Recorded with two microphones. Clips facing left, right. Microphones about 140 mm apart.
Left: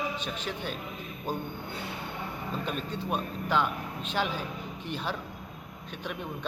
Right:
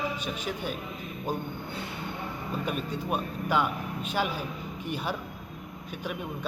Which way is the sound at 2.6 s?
10° right (ahead or behind).